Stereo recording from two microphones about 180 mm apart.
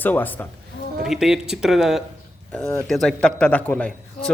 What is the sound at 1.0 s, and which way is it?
A man's voice, centre (ahead or behind).